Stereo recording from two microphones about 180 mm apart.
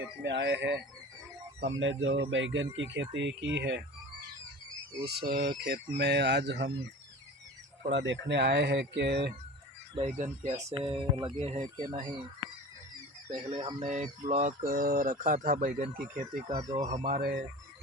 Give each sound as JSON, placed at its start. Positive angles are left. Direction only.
{"t": 0.0, "sound": "speech", "side_deg": -80}
{"t": 1.6, "sound": "speech", "side_deg": -90}
{"t": 5.0, "sound": "speech", "side_deg": -60}
{"t": 7.9, "sound": "speech", "side_deg": -90}
{"t": 9.9, "sound": "speech", "side_deg": -35}
{"t": 13.3, "sound": "speech", "side_deg": -35}
{"t": 13.8, "sound": "speech", "side_deg": -40}
{"t": 16.6, "sound": "speech", "side_deg": -20}
{"t": 17.1, "sound": "speech", "side_deg": -60}